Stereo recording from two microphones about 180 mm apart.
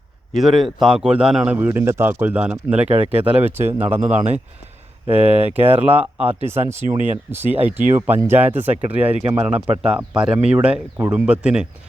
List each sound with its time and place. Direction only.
0.3 s speech: centre (ahead or behind)
2.8 s speech: 30° right (ahead or behind)
3.1 s speech: 10° right (ahead or behind)